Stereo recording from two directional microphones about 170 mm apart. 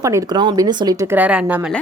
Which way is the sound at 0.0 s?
20° right (ahead or behind).